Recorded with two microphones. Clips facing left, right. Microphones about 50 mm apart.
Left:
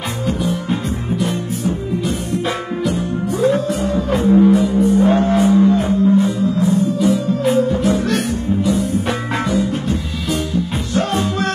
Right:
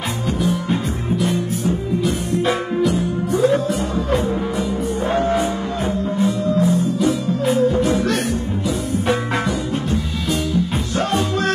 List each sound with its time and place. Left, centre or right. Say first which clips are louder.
0.4 s music: even; centre